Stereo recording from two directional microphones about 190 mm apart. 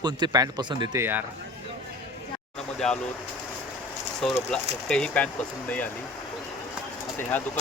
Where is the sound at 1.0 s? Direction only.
10° right (ahead or behind).